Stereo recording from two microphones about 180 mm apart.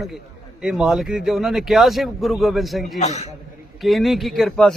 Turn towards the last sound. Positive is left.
turn(degrees=0)  # may be behind; listen again after turning